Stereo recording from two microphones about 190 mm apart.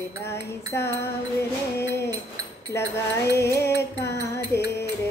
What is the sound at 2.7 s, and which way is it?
Speech, 15° left (ahead or behind).